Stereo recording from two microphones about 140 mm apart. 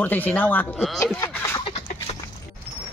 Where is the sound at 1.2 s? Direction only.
25° left (ahead or behind).